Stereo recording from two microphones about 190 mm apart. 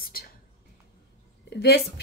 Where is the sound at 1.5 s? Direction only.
60° left (ahead or behind).